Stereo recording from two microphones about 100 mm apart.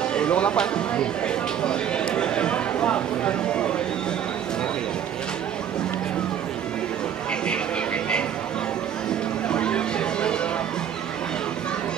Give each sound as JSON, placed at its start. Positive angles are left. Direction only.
{"t": 0.1, "sound": "music", "side_deg": 10}
{"t": 9.5, "sound": "music", "side_deg": 10}